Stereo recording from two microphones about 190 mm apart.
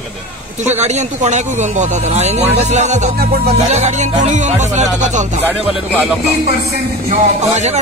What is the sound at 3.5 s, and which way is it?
Speech, 35° right (ahead or behind).